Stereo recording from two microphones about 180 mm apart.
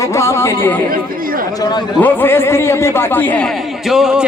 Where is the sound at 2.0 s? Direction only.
10° left (ahead or behind).